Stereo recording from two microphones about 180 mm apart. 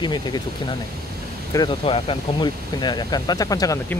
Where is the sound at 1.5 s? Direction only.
30° left (ahead or behind).